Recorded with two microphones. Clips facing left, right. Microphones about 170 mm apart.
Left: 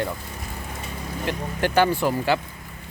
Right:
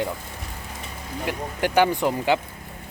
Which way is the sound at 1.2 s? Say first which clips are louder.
Even; 15° right (ahead or behind).